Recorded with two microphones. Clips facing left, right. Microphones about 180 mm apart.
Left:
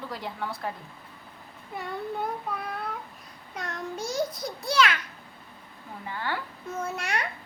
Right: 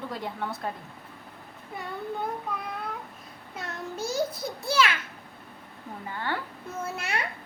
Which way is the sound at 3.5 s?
5° right (ahead or behind).